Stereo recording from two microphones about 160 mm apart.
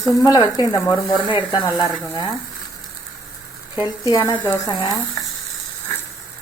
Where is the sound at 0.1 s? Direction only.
25° left (ahead or behind).